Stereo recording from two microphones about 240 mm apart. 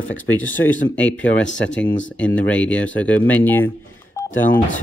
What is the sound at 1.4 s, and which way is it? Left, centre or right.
Speech, left.